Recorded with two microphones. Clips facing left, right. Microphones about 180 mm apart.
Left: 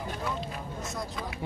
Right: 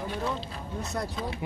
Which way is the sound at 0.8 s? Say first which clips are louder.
Right 5 dB; 65° right (ahead or behind).